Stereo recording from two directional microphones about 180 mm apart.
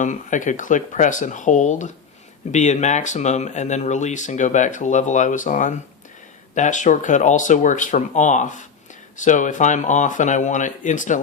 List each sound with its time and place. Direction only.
0.0 s speech: 45° left (ahead or behind)